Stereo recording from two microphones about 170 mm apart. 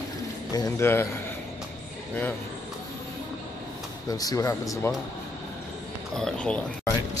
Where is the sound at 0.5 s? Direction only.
20° left (ahead or behind).